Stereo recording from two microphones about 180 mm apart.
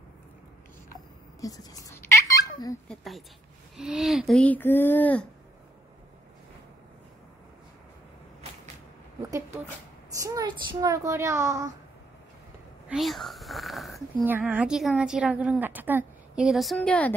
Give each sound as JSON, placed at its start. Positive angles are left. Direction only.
{"t": 0.8, "sound": "a sound", "side_deg": 20}
{"t": 2.9, "sound": "a woman's voice", "side_deg": 0}
{"t": 10.2, "sound": "speech", "side_deg": -25}
{"t": 12.8, "sound": "a woman's voice", "side_deg": 0}